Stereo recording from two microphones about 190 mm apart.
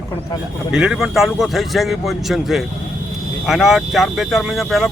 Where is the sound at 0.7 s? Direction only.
5° right (ahead or behind).